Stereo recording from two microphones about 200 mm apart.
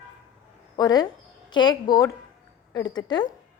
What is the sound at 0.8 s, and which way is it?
A woman's voice, 20° left (ahead or behind).